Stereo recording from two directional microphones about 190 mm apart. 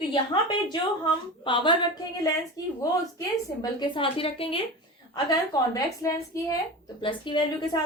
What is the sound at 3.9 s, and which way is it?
Speech, 30° left (ahead or behind).